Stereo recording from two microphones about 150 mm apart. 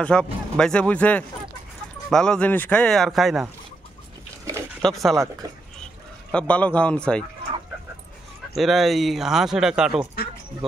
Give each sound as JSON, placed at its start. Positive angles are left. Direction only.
{"t": 0.0, "sound": "speech", "side_deg": 5}
{"t": 4.8, "sound": "speech", "side_deg": 0}
{"t": 5.1, "sound": "speech", "side_deg": -20}
{"t": 6.3, "sound": "speech", "side_deg": 10}
{"t": 8.5, "sound": "speech", "side_deg": 0}